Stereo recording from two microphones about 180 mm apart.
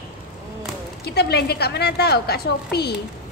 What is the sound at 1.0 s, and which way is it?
A woman's voice, 65° left (ahead or behind).